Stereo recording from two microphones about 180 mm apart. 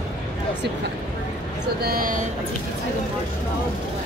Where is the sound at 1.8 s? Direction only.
50° right (ahead or behind).